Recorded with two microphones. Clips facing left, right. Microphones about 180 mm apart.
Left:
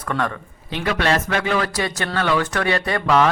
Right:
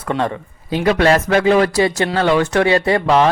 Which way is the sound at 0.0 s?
25° right (ahead or behind).